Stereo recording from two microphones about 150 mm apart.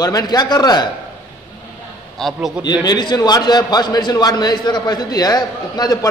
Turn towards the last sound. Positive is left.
turn(degrees=25)  # may be behind; listen again after turning